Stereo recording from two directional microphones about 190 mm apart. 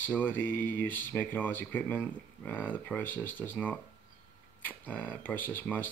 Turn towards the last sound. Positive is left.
turn(degrees=10)  # may be behind; listen again after turning